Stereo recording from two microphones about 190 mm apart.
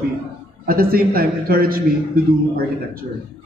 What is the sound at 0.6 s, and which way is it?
A man's voice, 50° right (ahead or behind).